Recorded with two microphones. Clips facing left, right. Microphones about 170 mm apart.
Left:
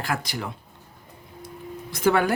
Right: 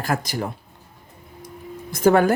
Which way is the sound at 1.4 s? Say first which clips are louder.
Right 1 dB; 45° right (ahead or behind).